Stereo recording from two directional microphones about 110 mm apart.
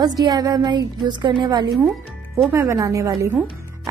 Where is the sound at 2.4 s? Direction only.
20° right (ahead or behind).